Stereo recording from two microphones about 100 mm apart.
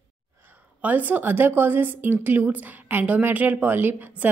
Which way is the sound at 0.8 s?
15° right (ahead or behind).